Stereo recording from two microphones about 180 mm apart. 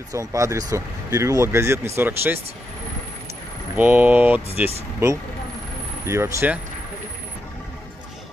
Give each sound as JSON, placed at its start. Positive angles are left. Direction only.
{"t": 0.3, "sound": "speech", "side_deg": -15}
{"t": 3.7, "sound": "speech", "side_deg": -10}
{"t": 6.0, "sound": "speech", "side_deg": -15}